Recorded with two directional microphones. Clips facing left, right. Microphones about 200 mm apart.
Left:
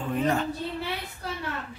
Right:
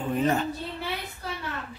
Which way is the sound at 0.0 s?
5° right (ahead or behind).